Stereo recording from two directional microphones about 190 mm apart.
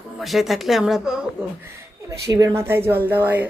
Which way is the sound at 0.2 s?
Centre (ahead or behind).